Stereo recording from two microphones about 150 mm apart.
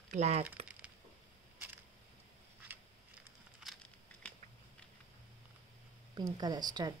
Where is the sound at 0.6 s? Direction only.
45° right (ahead or behind).